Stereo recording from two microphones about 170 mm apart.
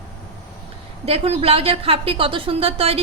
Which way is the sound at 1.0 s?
35° right (ahead or behind).